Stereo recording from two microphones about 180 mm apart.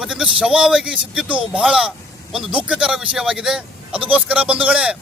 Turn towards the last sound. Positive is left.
turn(degrees=-5)  # may be behind; listen again after turning